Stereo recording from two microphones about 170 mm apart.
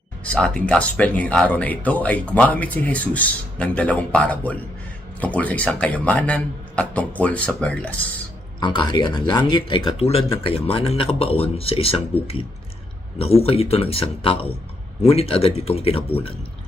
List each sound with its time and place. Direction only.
0.3 s speech: 5° left (ahead or behind)
8.6 s speech: 25° left (ahead or behind)
13.1 s speech: 35° left (ahead or behind)